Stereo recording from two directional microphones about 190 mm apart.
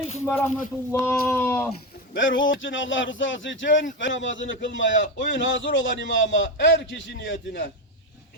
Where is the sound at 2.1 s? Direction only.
85° left.